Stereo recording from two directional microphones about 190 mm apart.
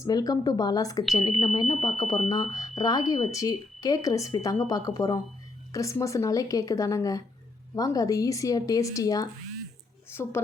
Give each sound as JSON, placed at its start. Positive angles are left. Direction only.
{"t": 0.0, "sound": "a woman's voice", "side_deg": 20}